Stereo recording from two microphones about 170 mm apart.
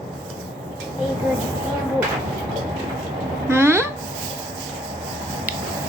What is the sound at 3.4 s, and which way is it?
Speech, 15° right (ahead or behind).